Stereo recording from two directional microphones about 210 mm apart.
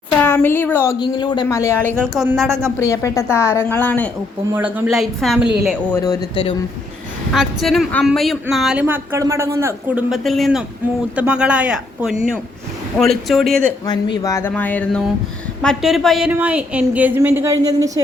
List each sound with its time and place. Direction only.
0.2 s speech: 10° left (ahead or behind)
0.9 s a man's voice: 20° left (ahead or behind)
2.0 s a woman's voice: centre (ahead or behind)
2.5 s a woman's voice: 10° right (ahead or behind)
2.7 s a woman's voice: 15° left (ahead or behind)
4.5 s a woman's voice: 5° right (ahead or behind)
5.9 s a man's voice: 15° left (ahead or behind)
7.3 s a woman's voice: centre (ahead or behind)
10.1 s a woman's voice: centre (ahead or behind)
14.2 s a woman's voice: 15° left (ahead or behind); by 18.0 s 15° right (ahead or behind)